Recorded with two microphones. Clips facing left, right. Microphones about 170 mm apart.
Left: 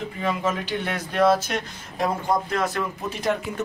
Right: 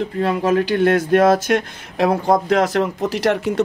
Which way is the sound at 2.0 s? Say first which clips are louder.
Right 7 dB; 85° right.